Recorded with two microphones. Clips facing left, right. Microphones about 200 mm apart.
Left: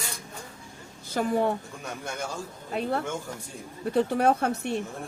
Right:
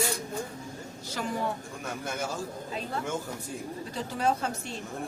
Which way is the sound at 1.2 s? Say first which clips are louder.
Left 7 dB; 45° left (ahead or behind).